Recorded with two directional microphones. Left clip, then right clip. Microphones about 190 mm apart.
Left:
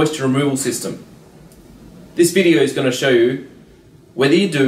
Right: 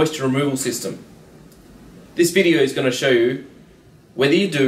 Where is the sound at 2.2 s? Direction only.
Centre (ahead or behind).